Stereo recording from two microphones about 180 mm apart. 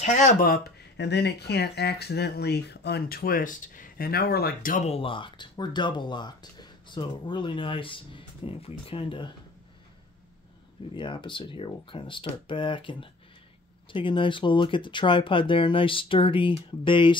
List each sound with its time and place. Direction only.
0.0 s speech: 45° left (ahead or behind)
4.8 s speech: 30° left (ahead or behind)
11.0 s speech: 25° left (ahead or behind)